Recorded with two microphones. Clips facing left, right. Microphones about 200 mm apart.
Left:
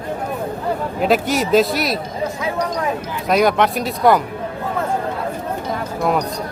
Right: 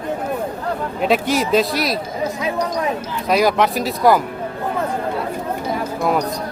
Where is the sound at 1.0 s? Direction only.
Centre (ahead or behind).